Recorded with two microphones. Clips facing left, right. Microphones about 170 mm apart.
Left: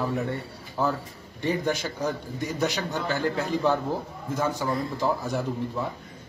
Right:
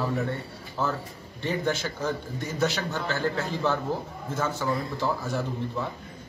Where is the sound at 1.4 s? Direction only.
15° left (ahead or behind).